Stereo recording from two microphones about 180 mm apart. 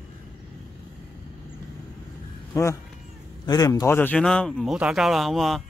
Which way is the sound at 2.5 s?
15° left (ahead or behind).